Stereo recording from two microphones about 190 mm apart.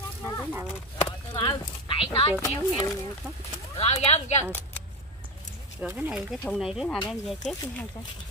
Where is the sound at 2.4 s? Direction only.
20° left (ahead or behind).